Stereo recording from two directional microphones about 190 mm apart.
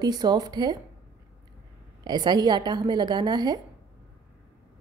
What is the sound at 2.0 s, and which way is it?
A woman's voice, 20° right (ahead or behind).